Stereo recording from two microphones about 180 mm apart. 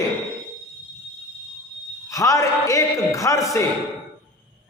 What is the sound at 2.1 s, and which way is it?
A man's voice, 20° left (ahead or behind).